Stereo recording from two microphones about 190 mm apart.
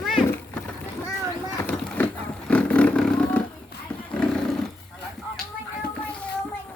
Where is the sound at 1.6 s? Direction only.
10° left (ahead or behind).